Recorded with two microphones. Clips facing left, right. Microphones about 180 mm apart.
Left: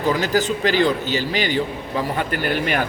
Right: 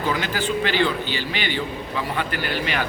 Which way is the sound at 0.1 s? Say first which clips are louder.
Left 6 dB; 40° left (ahead or behind).